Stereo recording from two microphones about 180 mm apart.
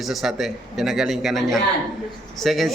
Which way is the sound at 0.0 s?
Centre (ahead or behind).